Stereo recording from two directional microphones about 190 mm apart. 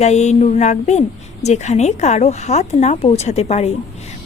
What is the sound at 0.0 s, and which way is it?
A woman's voice, 35° left (ahead or behind).